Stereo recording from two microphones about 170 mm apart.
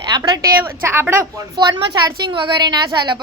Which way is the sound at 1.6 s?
25° right (ahead or behind).